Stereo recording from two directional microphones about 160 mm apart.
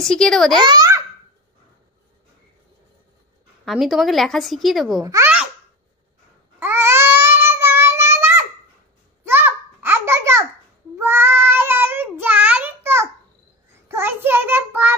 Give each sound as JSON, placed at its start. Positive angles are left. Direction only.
{"t": 0.0, "sound": "a woman's voice", "side_deg": 5}
{"t": 0.6, "sound": "a child's voice", "side_deg": -25}
{"t": 3.6, "sound": "a woman's voice", "side_deg": 0}
{"t": 5.0, "sound": "a child's voice", "side_deg": -20}
{"t": 6.6, "sound": "babbling", "side_deg": -15}
{"t": 9.2, "sound": "a sound", "side_deg": -15}
{"t": 11.0, "sound": "child singing", "side_deg": -15}